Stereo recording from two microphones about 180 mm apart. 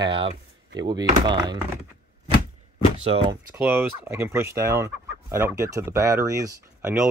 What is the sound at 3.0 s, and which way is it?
Speech, 30° right (ahead or behind).